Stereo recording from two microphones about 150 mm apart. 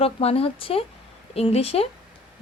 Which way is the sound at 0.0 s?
40° left (ahead or behind).